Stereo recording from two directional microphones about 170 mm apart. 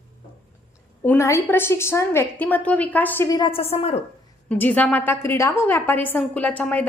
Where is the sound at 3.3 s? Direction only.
25° left (ahead or behind).